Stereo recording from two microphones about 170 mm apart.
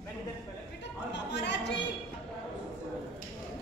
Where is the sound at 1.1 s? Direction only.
90° left.